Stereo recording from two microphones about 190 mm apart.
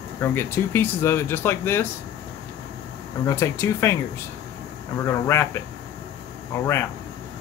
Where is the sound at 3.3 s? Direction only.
15° left (ahead or behind).